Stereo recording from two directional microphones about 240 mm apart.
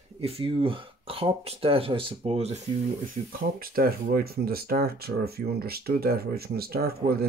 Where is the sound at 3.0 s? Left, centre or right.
Right.